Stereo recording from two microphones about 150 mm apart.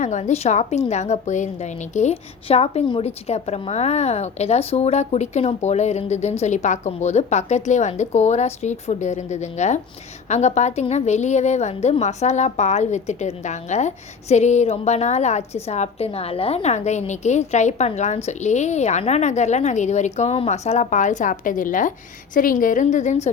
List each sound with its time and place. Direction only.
0.0 s a woman's voice: 50° left (ahead or behind)